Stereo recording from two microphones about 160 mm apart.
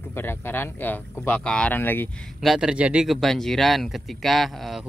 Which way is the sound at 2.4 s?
5° right (ahead or behind).